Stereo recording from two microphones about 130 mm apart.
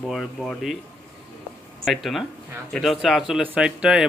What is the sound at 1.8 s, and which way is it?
A man's voice, centre (ahead or behind).